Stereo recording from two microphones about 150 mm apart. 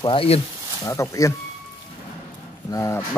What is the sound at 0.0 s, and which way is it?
Speech, 35° left (ahead or behind).